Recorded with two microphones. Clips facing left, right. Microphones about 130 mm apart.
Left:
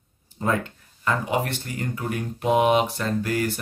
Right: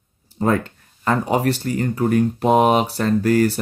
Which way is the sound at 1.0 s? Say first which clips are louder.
Right 6 dB; 40° right (ahead or behind).